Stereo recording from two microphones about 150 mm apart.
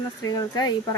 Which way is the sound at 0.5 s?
25° left (ahead or behind).